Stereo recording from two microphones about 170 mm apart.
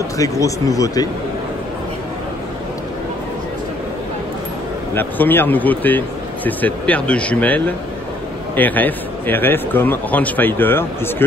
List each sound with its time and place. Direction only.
0.2 s speech: 20° left (ahead or behind)
4.9 s speech: 10° left (ahead or behind)